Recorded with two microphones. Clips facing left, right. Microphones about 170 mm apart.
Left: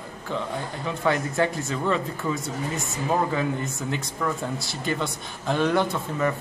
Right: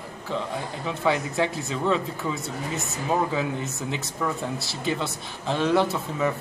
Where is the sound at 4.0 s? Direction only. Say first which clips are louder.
Even; 5° right (ahead or behind).